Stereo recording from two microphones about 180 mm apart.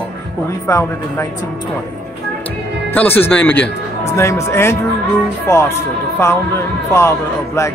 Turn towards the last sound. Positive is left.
turn(degrees=15)  # may be behind; listen again after turning